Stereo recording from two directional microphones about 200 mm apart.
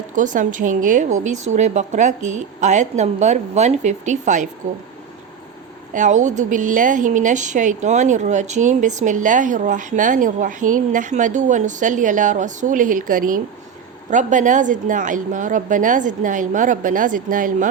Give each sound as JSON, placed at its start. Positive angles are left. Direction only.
{"t": 0.2, "sound": "a woman's voice", "side_deg": -40}
{"t": 5.9, "sound": "a woman's voice", "side_deg": -40}